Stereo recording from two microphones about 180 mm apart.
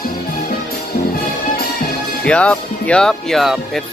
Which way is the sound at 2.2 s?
5° left (ahead or behind).